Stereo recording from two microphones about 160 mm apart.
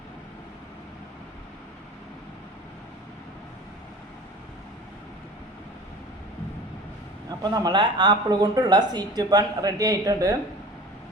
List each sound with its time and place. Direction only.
7.3 s speech: 25° right (ahead or behind)